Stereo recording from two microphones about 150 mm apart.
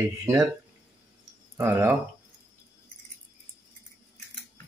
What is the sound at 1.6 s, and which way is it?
Speech, 15° right (ahead or behind).